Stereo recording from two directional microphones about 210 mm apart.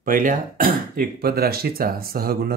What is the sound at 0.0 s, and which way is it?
Speech, 40° right (ahead or behind).